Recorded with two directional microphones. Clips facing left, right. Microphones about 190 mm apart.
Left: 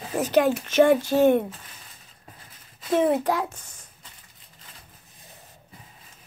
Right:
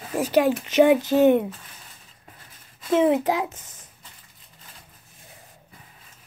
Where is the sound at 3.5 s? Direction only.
20° right (ahead or behind).